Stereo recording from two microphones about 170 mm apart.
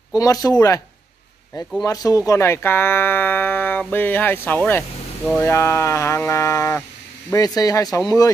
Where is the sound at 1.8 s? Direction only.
20° left (ahead or behind).